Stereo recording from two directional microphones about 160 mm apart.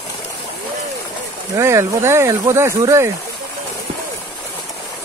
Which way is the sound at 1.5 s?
20° right (ahead or behind).